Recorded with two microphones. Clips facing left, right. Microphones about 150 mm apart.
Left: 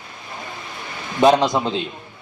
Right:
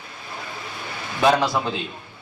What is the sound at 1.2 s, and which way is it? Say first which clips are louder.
Speech: left 4 dB; 20° left (ahead or behind).